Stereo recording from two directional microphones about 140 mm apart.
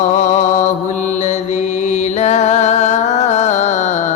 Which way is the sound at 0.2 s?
60° left (ahead or behind).